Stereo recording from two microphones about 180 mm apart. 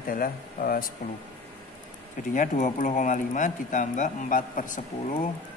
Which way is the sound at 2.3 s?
45° left (ahead or behind).